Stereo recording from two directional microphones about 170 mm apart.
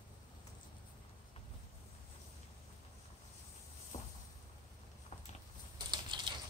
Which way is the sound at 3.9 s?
45° left (ahead or behind).